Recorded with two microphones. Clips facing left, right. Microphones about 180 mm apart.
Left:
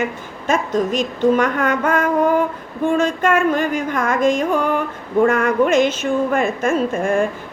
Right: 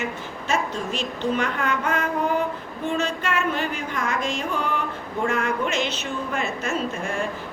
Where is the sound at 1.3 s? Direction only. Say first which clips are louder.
Left 7 dB; 50° left (ahead or behind).